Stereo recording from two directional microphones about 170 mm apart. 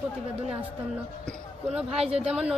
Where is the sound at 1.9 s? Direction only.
35° right (ahead or behind).